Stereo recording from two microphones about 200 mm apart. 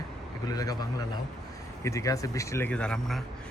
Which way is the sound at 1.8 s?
15° left (ahead or behind).